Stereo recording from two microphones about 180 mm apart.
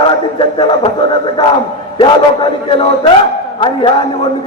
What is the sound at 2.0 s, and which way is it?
Speech, 30° left (ahead or behind).